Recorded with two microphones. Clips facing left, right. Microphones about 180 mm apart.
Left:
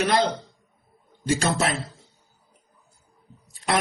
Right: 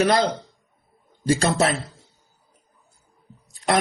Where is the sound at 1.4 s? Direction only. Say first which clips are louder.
Right 3 dB; 40° right (ahead or behind).